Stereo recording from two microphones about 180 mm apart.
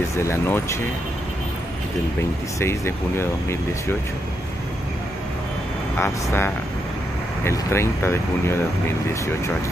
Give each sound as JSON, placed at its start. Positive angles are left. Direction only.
{"t": 0.2, "sound": "speech", "side_deg": 15}
{"t": 2.6, "sound": "speech", "side_deg": 15}
{"t": 5.9, "sound": "speech", "side_deg": 15}